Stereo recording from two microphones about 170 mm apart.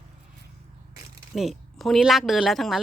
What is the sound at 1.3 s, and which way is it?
Speech, centre (ahead or behind).